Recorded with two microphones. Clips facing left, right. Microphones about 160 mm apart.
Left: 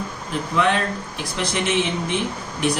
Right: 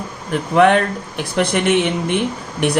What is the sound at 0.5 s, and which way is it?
Speech, 60° right (ahead or behind).